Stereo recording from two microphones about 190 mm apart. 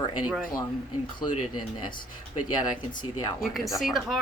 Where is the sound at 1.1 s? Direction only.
25° left (ahead or behind).